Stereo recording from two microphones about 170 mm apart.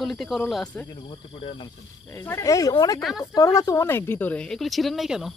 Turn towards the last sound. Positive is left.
turn(degrees=0)  # may be behind; listen again after turning